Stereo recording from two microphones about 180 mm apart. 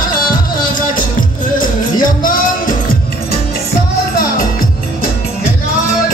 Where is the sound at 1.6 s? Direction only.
50° left (ahead or behind).